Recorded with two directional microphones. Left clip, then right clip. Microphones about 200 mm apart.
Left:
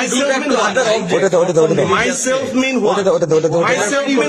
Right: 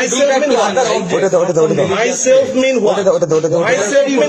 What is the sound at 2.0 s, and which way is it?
A man's voice, 30° left (ahead or behind).